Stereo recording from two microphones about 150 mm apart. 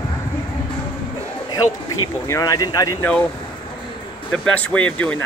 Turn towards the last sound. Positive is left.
turn(degrees=10)  # may be behind; listen again after turning